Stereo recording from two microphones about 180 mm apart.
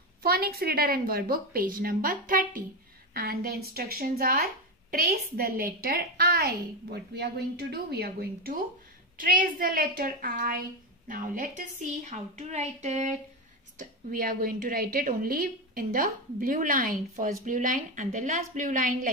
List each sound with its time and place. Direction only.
0.2 s a woman's voice: 60° right (ahead or behind)